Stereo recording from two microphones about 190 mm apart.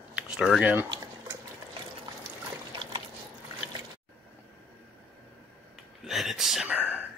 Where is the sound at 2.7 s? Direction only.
25° right (ahead or behind).